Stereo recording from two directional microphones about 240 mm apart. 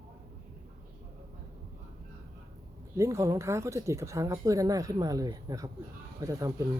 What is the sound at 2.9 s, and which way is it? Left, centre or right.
Speech, centre.